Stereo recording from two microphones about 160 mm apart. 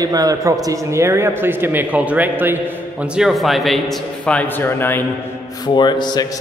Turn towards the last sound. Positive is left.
turn(degrees=25)  # may be behind; listen again after turning